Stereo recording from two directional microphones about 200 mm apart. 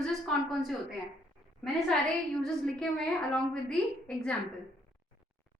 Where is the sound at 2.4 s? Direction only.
5° left (ahead or behind).